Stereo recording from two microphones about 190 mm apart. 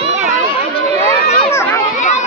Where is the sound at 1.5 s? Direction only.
15° left (ahead or behind).